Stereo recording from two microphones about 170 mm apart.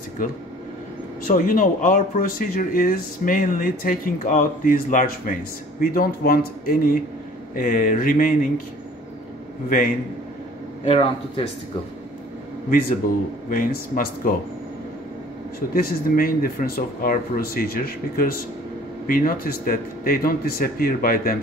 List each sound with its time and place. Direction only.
1.2 s speech: 55° left (ahead or behind)
9.7 s speech: 55° left (ahead or behind)
10.9 s speech: 30° left (ahead or behind)
13.5 s speech: 55° left (ahead or behind)
15.7 s speech: 60° left (ahead or behind)